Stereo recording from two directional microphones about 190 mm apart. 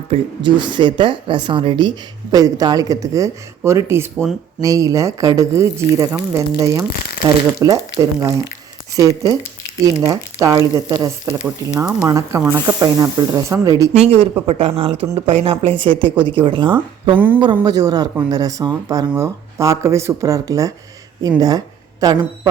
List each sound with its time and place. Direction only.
0.1 s speech: 25° right (ahead or behind)
11.8 s speech: 5° right (ahead or behind)
12.0 s speech: 15° right (ahead or behind)
13.9 s speech: 30° right (ahead or behind)
17.2 s speech: 10° right (ahead or behind)
17.4 s speech: 25° right (ahead or behind)